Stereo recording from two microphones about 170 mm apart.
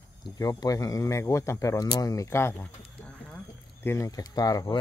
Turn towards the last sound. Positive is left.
turn(degrees=20)  # may be behind; listen again after turning